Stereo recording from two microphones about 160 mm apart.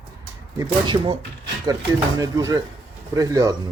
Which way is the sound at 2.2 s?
20° right (ahead or behind).